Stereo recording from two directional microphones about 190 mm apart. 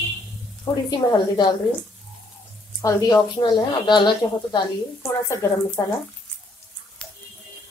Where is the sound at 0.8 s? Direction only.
20° left (ahead or behind).